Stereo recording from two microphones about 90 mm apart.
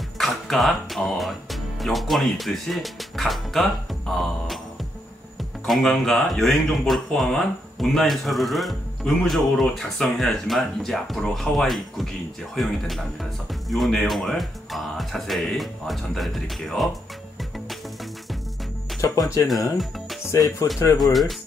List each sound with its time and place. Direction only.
0.2 s speech: centre (ahead or behind)
18.9 s speech: 40° left (ahead or behind)
21.0 s speech: centre (ahead or behind)